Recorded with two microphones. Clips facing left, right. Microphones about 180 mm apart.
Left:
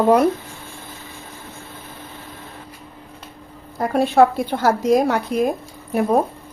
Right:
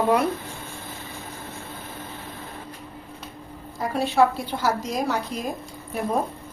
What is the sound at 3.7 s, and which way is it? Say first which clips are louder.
A woman's voice: left 6 dB; 55° left (ahead or behind).